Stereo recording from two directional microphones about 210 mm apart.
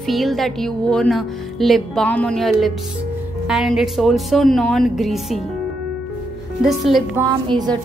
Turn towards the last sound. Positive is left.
turn(degrees=-20)  # may be behind; listen again after turning